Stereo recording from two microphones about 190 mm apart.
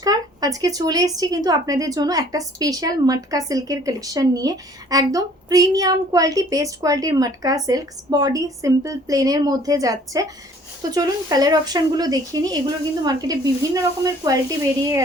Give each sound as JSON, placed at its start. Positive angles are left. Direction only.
{"t": 0.0, "sound": "speech", "side_deg": -20}